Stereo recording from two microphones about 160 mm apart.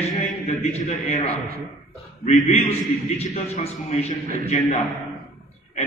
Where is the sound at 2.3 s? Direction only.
45° left (ahead or behind).